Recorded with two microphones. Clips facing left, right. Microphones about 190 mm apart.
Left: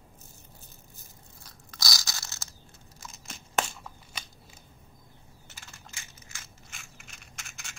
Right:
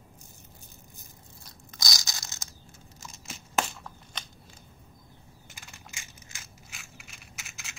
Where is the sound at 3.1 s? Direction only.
Centre (ahead or behind).